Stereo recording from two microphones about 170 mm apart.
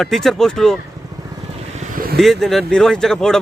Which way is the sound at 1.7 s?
50° right (ahead or behind).